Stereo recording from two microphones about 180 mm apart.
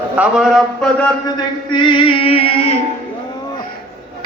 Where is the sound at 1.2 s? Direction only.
25° left (ahead or behind).